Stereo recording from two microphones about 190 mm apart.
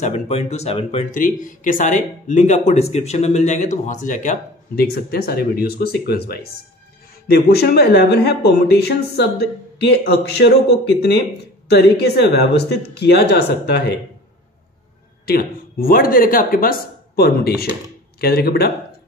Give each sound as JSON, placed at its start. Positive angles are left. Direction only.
{"t": 0.0, "sound": "speech", "side_deg": 35}
{"t": 15.2, "sound": "speech", "side_deg": 50}